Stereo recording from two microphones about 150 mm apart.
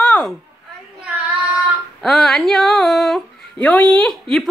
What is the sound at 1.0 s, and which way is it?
Child singing, 10° right (ahead or behind).